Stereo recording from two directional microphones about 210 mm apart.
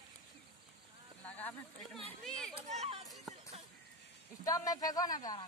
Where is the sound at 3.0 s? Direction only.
Centre (ahead or behind).